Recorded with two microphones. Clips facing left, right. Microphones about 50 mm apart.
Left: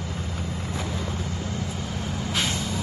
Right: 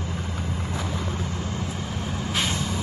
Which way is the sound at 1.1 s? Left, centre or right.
Centre.